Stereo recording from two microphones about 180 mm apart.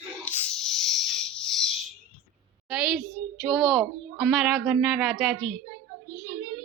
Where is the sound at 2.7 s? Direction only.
5° right (ahead or behind).